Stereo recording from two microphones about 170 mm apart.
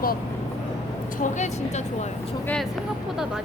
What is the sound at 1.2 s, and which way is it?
Speech, 45° left (ahead or behind).